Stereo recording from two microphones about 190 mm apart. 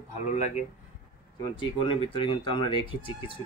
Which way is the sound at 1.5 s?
25° left (ahead or behind).